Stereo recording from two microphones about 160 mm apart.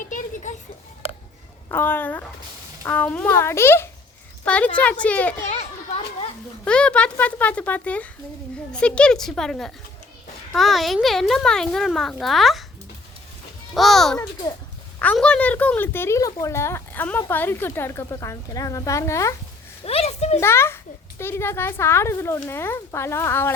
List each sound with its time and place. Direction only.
1.7 s a woman's voice: 15° left (ahead or behind)
5.4 s a child's voice: 50° left (ahead or behind)
6.7 s speech: 5° left (ahead or behind)
13.7 s speech: centre (ahead or behind); by 19.3 s 20° left (ahead or behind)
19.8 s a sound: 40° left (ahead or behind)
20.4 s speech: 15° left (ahead or behind)